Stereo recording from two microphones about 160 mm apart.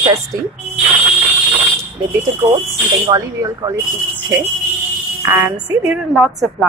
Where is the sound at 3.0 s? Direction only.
20° right (ahead or behind).